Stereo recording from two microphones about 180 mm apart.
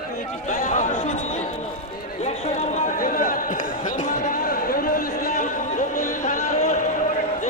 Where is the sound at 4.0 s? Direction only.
50° left (ahead or behind).